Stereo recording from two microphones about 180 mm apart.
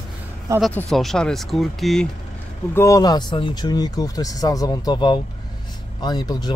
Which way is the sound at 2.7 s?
15° left (ahead or behind).